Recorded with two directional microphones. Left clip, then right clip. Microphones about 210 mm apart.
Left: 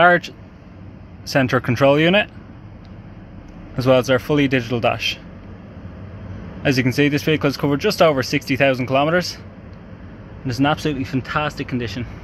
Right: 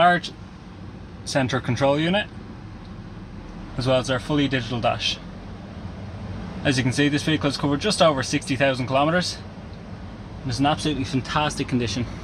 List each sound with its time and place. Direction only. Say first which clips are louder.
0.0 s speech: left 4 dB; 25° left (ahead or behind)
1.3 s speech: left 6 dB; 20° left (ahead or behind)
3.7 s speech: left 6 dB; 25° left (ahead or behind)
6.6 s speech: left 4 dB; 20° left (ahead or behind)
10.4 s speech: left 3 dB; 25° left (ahead or behind); by 12.1 s 5° left (ahead or behind)